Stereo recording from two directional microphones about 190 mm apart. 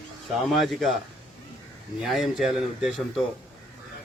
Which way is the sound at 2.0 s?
Centre (ahead or behind).